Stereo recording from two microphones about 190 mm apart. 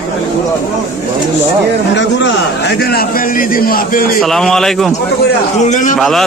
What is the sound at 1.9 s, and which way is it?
A man's voice, 70° left (ahead or behind).